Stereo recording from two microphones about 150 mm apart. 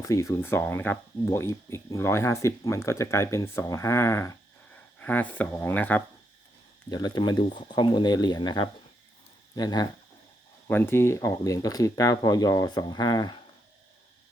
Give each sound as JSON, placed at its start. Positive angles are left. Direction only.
{"t": 0.0, "sound": "speech", "side_deg": 20}
{"t": 6.9, "sound": "speech", "side_deg": 30}
{"t": 10.7, "sound": "speech", "side_deg": 15}